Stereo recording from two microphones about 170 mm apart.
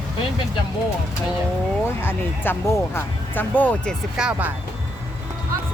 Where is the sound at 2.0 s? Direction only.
15° left (ahead or behind).